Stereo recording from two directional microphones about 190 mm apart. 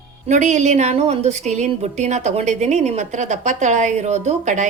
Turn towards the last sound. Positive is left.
turn(degrees=-35)  # may be behind; listen again after turning